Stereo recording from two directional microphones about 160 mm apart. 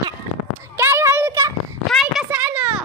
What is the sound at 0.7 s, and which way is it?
Child singing, 15° right (ahead or behind).